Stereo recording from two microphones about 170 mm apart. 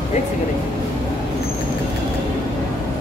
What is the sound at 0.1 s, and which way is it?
Speech, 40° left (ahead or behind).